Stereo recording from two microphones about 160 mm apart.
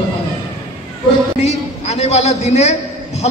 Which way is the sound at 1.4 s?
45° left (ahead or behind).